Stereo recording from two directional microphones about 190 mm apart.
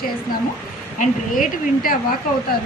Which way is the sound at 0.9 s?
45° left (ahead or behind).